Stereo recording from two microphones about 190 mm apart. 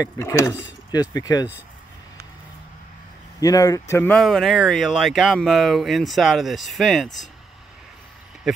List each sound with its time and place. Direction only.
0.0 s speech: 15° left (ahead or behind)
3.3 s speech: 20° left (ahead or behind); by 7.1 s centre (ahead or behind)
8.5 s speech: centre (ahead or behind)